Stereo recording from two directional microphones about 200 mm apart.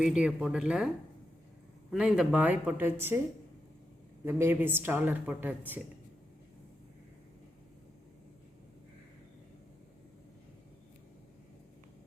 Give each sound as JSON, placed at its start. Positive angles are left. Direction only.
{"t": 0.0, "sound": "speech", "side_deg": -5}
{"t": 1.9, "sound": "a woman's voice", "side_deg": -5}
{"t": 4.3, "sound": "a woman's voice", "side_deg": -10}